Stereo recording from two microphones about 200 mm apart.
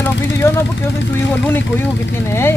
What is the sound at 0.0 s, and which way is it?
Vehicle, 10° left (ahead or behind).